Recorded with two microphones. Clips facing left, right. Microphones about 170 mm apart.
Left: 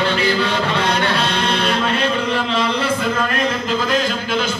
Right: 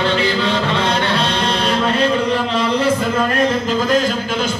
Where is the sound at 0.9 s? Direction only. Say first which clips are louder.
Right 1 dB; 30° right (ahead or behind).